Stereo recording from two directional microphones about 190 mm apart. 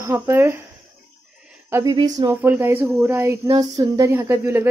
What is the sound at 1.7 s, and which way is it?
Speech, 20° right (ahead or behind).